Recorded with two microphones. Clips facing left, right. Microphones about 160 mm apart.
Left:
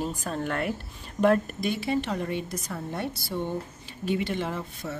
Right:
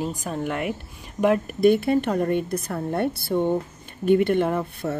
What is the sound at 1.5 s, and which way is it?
A woman's voice, 55° right (ahead or behind).